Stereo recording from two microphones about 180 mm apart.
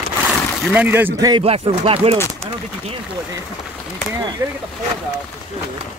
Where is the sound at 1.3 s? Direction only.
30° right (ahead or behind).